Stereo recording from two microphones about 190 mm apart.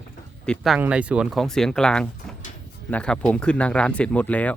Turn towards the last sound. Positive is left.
turn(degrees=5)  # may be behind; listen again after turning